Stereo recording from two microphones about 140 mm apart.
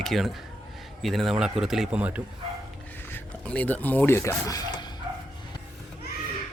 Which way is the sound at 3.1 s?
10° left (ahead or behind).